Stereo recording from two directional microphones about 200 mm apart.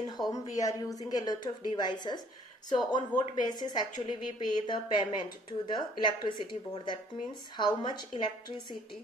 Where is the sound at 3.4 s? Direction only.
20° left (ahead or behind).